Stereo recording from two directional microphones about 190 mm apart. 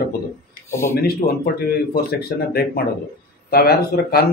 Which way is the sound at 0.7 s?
15° left (ahead or behind).